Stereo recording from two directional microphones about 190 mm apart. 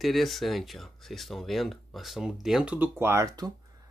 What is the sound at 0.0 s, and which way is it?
Speech, centre (ahead or behind).